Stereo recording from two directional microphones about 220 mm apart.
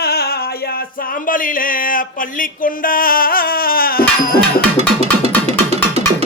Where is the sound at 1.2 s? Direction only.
40° left (ahead or behind).